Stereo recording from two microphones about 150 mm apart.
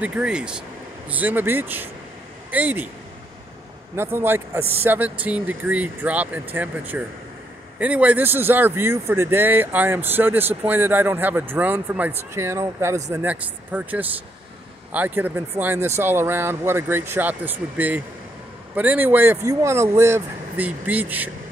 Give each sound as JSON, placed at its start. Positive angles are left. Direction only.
{"t": 0.0, "sound": "speech", "side_deg": -5}
{"t": 3.9, "sound": "speech", "side_deg": -15}